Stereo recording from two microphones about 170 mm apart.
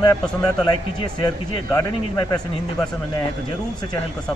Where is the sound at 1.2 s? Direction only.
20° left (ahead or behind).